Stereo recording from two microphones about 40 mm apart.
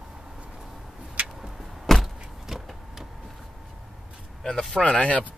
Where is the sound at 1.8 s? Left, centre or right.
Centre.